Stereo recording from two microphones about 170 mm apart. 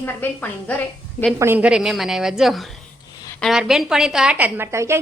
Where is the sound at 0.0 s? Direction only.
10° left (ahead or behind).